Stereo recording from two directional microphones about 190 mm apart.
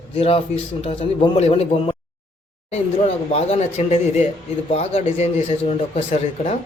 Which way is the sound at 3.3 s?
35° left (ahead or behind).